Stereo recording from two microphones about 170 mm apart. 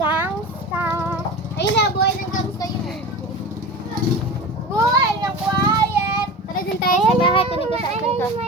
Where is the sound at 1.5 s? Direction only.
90° left.